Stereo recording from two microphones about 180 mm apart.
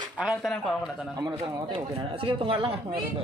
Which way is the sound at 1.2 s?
30° right (ahead or behind).